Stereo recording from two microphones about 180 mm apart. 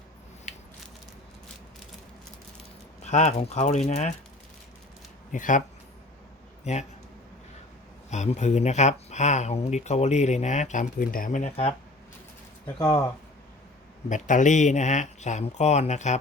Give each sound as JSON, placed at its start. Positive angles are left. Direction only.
{"t": 0.5, "sound": "a sound", "side_deg": 45}
{"t": 3.0, "sound": "speech", "side_deg": 40}
{"t": 5.3, "sound": "speech", "side_deg": 45}
{"t": 6.7, "sound": "speech", "side_deg": 40}
{"t": 8.1, "sound": "speech", "side_deg": 40}
{"t": 12.6, "sound": "speech", "side_deg": 20}
{"t": 14.1, "sound": "speech", "side_deg": 45}